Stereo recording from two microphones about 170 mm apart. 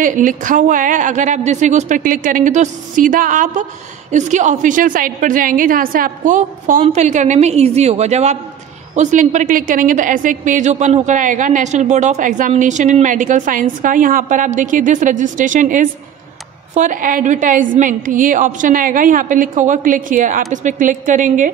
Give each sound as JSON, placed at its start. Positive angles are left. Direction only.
{"t": 0.0, "sound": "a woman's voice", "side_deg": -50}